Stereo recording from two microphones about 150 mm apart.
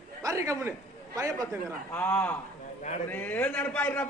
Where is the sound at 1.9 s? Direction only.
10° left (ahead or behind).